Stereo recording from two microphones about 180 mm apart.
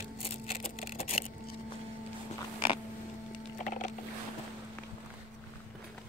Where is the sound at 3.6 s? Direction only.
45° left (ahead or behind).